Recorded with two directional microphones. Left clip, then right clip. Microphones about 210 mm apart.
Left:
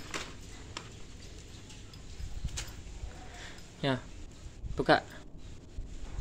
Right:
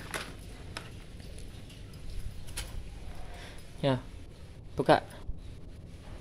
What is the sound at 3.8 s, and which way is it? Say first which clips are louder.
Speech: right 3 dB; 5° right (ahead or behind).